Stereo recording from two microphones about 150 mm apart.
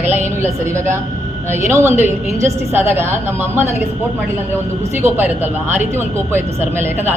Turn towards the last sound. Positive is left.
turn(degrees=-15)  # may be behind; listen again after turning